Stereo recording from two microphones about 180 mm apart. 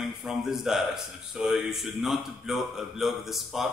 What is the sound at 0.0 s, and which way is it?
A man's voice, centre (ahead or behind).